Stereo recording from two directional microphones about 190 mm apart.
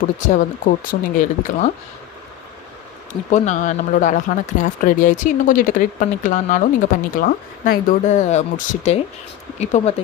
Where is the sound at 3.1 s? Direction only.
40° left (ahead or behind).